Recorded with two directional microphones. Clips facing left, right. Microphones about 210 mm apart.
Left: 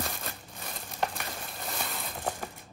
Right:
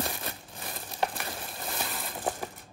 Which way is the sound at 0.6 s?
5° right (ahead or behind).